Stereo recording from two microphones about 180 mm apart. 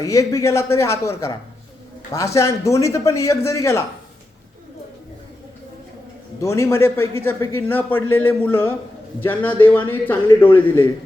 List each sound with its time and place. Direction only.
0.0 s speech: 15° left (ahead or behind)
6.4 s speech: 15° left (ahead or behind)